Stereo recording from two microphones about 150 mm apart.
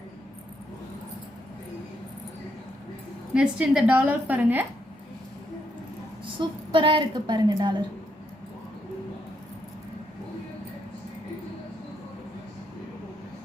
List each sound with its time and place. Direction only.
3.3 s a woman's voice: 5° right (ahead or behind)
6.4 s a woman's voice: 35° right (ahead or behind)